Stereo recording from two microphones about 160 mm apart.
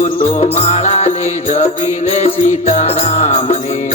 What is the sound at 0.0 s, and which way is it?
Music, 40° left (ahead or behind).